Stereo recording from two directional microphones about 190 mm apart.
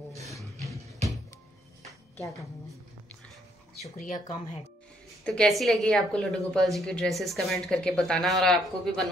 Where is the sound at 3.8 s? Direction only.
40° left (ahead or behind).